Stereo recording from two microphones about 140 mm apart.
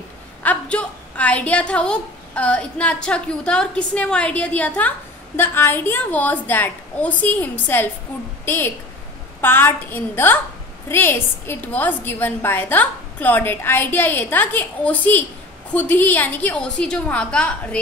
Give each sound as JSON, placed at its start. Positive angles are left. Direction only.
{"t": 0.4, "sound": "a woman's voice", "side_deg": 10}